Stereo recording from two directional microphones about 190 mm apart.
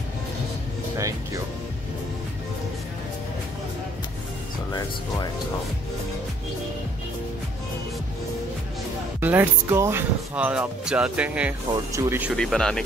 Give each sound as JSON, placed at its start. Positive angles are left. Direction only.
{"t": 0.9, "sound": "music", "side_deg": -15}
{"t": 9.2, "sound": "speech", "side_deg": -10}
{"t": 12.4, "sound": "speech", "side_deg": 5}